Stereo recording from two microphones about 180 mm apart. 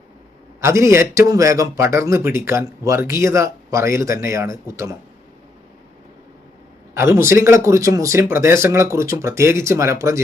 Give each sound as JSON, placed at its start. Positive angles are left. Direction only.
{"t": 0.6, "sound": "a man's voice", "side_deg": -15}
{"t": 6.9, "sound": "a man's voice", "side_deg": -15}